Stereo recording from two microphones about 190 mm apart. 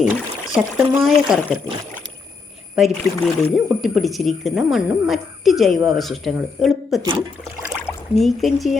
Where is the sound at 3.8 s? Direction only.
Centre (ahead or behind).